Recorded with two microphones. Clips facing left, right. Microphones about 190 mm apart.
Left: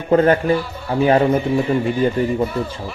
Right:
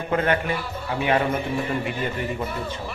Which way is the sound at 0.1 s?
35° left (ahead or behind).